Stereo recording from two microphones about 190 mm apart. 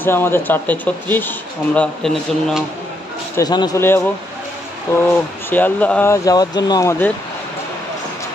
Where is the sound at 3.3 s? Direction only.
20° left (ahead or behind).